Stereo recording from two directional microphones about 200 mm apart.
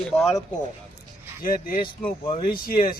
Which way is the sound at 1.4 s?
45° left (ahead or behind).